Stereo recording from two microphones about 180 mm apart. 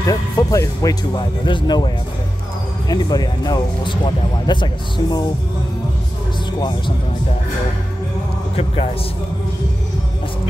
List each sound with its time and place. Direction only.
0.0 s speech: 20° left (ahead or behind)
2.9 s speech: 20° left (ahead or behind)